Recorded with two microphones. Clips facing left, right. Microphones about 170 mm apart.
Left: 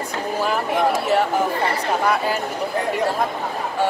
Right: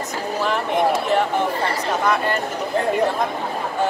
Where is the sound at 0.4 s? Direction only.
5° left (ahead or behind).